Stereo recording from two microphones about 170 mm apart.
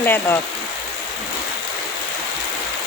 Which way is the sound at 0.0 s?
10° left (ahead or behind).